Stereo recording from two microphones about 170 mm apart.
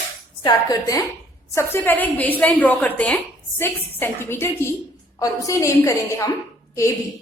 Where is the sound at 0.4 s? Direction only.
20° left (ahead or behind).